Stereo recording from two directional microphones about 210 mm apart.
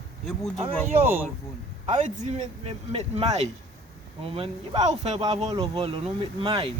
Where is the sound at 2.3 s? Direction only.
30° right (ahead or behind).